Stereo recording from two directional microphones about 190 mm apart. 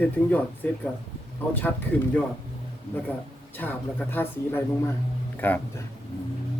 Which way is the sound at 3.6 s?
10° left (ahead or behind).